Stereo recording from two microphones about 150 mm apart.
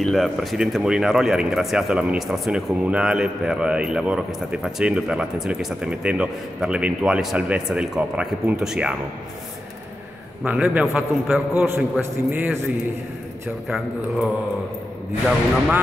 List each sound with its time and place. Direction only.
0.0 s speech: centre (ahead or behind)
10.4 s a man's voice: 10° right (ahead or behind)
13.7 s speech: centre (ahead or behind)